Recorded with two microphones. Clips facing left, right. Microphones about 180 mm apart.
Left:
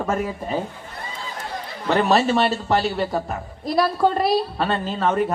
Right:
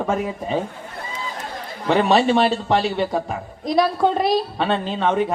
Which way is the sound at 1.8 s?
Centre (ahead or behind).